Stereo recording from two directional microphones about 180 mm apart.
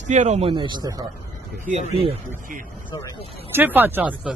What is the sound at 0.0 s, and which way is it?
Speech, 40° right (ahead or behind).